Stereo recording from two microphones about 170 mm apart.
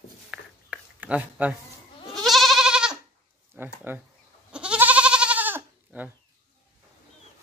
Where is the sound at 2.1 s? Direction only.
Centre (ahead or behind).